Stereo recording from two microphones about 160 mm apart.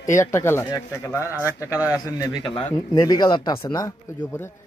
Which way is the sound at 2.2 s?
30° left (ahead or behind).